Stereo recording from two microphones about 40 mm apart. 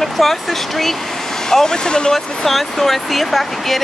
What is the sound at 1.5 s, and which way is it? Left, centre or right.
Speech, centre.